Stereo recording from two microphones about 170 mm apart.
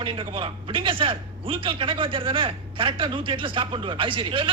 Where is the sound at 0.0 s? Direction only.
30° right (ahead or behind).